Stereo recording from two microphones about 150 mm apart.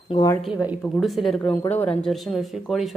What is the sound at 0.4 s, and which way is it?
Speech, 10° right (ahead or behind).